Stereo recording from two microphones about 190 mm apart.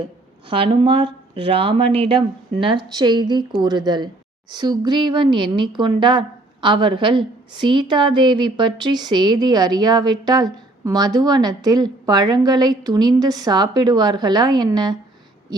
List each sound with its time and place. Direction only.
0.5 s a woman's voice: 30° right (ahead or behind)